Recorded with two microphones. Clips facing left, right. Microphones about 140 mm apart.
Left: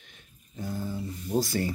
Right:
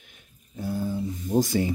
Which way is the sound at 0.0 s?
10° right (ahead or behind).